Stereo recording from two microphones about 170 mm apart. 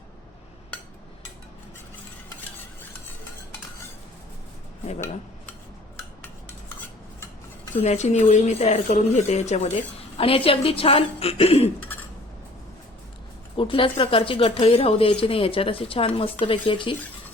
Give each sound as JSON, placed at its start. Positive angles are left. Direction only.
{"t": 7.8, "sound": "speech", "side_deg": 40}
{"t": 13.6, "sound": "speech", "side_deg": 30}